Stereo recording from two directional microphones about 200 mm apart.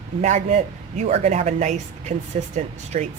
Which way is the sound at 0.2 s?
35° right (ahead or behind).